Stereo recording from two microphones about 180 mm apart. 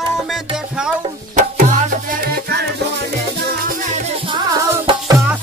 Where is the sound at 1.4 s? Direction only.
40° right (ahead or behind).